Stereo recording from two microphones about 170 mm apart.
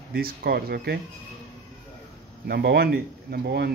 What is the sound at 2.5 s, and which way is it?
Speech, 70° right (ahead or behind).